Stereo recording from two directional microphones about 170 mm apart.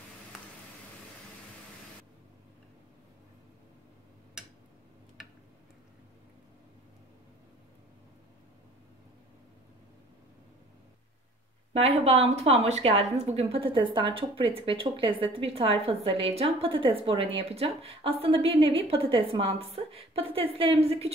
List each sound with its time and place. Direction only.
11.7 s speech: 35° right (ahead or behind)